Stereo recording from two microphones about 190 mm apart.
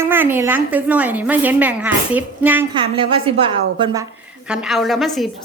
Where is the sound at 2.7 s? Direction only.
30° right (ahead or behind).